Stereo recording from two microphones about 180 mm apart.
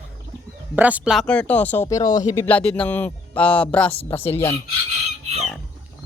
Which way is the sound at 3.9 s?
30° left (ahead or behind).